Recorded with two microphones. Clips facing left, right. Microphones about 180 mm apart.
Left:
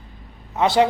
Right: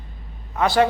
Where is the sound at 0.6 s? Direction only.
20° left (ahead or behind).